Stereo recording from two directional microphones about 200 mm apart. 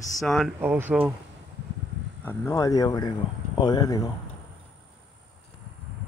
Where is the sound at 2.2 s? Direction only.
10° left (ahead or behind).